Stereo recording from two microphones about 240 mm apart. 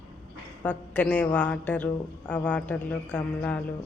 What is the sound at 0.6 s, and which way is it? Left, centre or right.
A woman's voice, centre.